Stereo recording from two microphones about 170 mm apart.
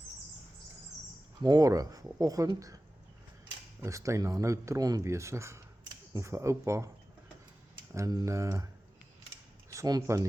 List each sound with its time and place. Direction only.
1.4 s speech: 20° right (ahead or behind)
7.9 s speech: 20° right (ahead or behind)
9.7 s speech: 20° right (ahead or behind)